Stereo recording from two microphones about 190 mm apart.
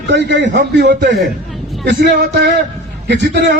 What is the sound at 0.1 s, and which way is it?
A man's voice, 70° right (ahead or behind).